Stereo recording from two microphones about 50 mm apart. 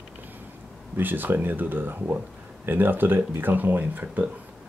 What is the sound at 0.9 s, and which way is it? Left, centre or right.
Speech, right.